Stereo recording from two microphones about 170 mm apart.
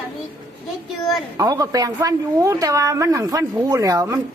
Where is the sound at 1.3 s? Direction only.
20° right (ahead or behind).